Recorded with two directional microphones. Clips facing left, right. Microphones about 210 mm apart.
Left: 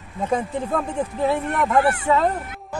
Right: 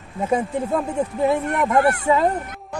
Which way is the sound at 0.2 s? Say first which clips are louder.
Right 2 dB; 5° right (ahead or behind).